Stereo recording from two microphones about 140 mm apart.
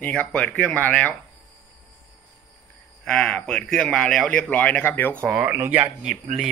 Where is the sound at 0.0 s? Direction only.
10° left (ahead or behind).